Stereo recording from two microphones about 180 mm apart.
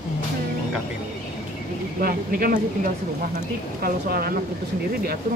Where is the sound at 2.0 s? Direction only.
55° right (ahead or behind).